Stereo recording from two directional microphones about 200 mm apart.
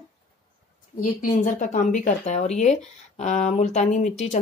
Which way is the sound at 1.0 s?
40° left (ahead or behind).